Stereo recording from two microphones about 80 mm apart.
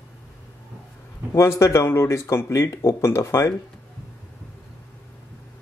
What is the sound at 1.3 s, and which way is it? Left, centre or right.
Speech, left.